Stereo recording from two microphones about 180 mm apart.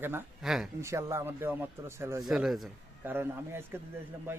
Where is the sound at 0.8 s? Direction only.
15° right (ahead or behind).